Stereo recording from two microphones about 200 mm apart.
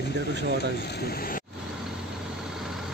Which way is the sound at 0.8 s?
50° left (ahead or behind).